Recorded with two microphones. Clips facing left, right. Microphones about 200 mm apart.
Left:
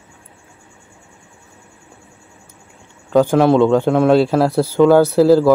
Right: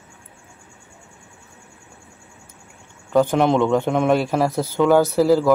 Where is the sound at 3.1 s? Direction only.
10° left (ahead or behind).